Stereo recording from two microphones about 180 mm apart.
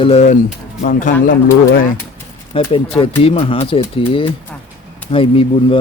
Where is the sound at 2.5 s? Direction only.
30° left (ahead or behind).